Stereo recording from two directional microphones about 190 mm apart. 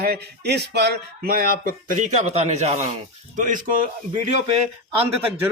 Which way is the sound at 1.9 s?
40° right (ahead or behind).